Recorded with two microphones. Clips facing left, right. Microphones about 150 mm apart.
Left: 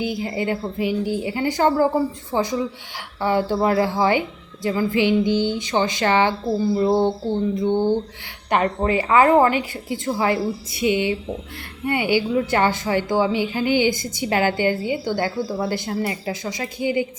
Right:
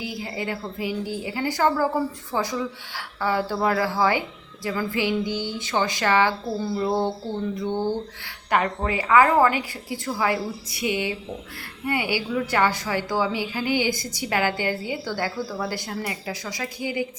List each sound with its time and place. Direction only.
0.0 s a woman's voice: 25° left (ahead or behind)